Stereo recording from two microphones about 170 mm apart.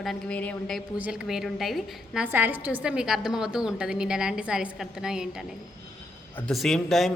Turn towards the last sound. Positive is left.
turn(degrees=0)  # may be behind; listen again after turning